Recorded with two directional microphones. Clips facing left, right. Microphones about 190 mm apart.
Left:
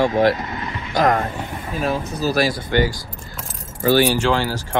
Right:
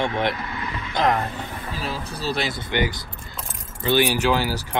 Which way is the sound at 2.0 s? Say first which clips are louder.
Left 7 dB; 30° right (ahead or behind).